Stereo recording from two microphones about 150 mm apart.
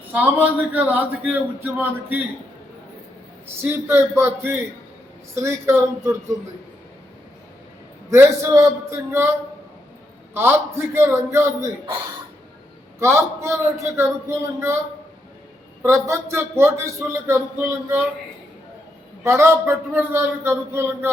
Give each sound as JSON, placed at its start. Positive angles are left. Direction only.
{"t": 0.1, "sound": "a man's voice", "side_deg": -10}
{"t": 3.4, "sound": "a man's voice", "side_deg": -15}
{"t": 8.1, "sound": "a man's voice", "side_deg": -20}
{"t": 10.3, "sound": "a man's voice", "side_deg": -15}
{"t": 13.0, "sound": "a man's voice", "side_deg": -20}
{"t": 15.8, "sound": "a man's voice", "side_deg": -20}
{"t": 19.2, "sound": "a man's voice", "side_deg": -15}